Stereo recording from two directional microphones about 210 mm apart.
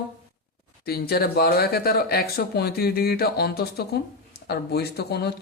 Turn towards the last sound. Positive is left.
turn(degrees=50)  # may be behind; listen again after turning